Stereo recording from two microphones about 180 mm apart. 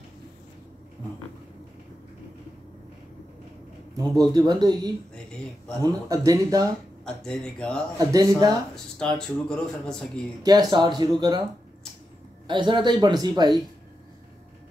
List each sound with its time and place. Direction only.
4.3 s speech: 20° right (ahead or behind)
5.1 s a sound: 5° left (ahead or behind)
5.8 s speech: 20° right (ahead or behind)
7.1 s speech: 5° left (ahead or behind)
8.0 s speech: 20° right (ahead or behind)
8.7 s speech: 5° left (ahead or behind)
10.4 s speech: 20° right (ahead or behind)
12.4 s speech: 25° right (ahead or behind)